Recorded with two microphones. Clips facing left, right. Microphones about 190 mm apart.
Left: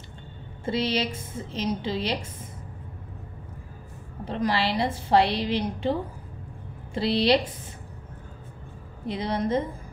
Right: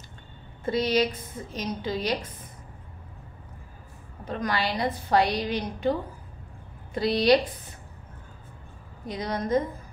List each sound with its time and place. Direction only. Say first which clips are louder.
0.7 s a woman's voice: right 2 dB; 25° left (ahead or behind)
4.2 s a woman's voice: left 3 dB; 30° left (ahead or behind)
9.0 s a woman's voice: left 3 dB; 25° left (ahead or behind)